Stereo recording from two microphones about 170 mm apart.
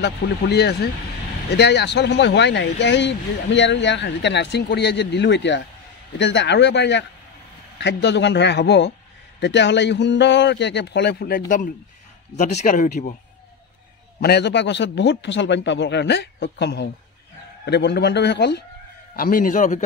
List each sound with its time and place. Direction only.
0.0 s speech: 75° left (ahead or behind)
1.5 s speech: 85° left; by 13.1 s 50° left (ahead or behind)
14.2 s speech: 75° left (ahead or behind)
19.1 s speech: 55° left (ahead or behind)